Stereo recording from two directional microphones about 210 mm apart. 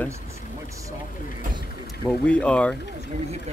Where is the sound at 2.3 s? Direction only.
5° left (ahead or behind).